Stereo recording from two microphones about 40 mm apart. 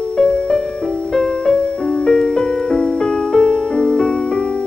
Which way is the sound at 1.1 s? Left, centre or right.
Centre.